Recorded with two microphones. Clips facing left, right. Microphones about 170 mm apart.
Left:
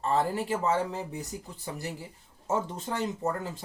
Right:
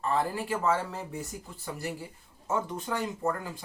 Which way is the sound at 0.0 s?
25° left (ahead or behind).